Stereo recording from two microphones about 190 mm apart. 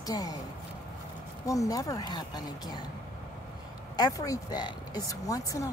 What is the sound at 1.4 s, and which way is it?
Speech, 20° left (ahead or behind).